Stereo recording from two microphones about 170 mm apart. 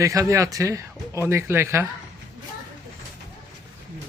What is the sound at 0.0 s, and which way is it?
Speech, 20° right (ahead or behind).